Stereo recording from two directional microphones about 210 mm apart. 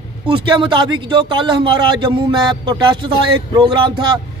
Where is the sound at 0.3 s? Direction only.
25° right (ahead or behind).